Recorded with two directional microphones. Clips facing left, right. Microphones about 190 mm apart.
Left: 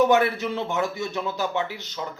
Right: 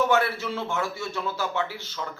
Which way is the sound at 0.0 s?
20° left (ahead or behind).